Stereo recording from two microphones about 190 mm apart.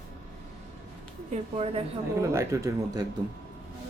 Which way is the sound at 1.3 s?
35° right (ahead or behind).